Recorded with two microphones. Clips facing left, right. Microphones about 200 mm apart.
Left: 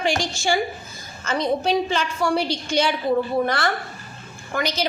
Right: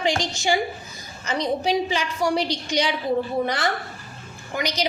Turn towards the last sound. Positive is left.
turn(degrees=-15)  # may be behind; listen again after turning